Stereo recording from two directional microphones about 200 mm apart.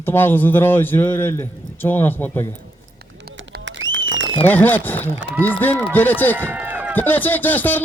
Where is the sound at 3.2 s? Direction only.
60° right (ahead or behind).